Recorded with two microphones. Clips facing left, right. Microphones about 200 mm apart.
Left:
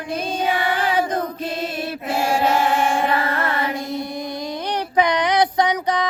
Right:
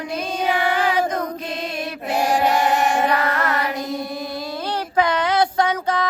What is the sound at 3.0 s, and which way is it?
Mantra, 25° left (ahead or behind).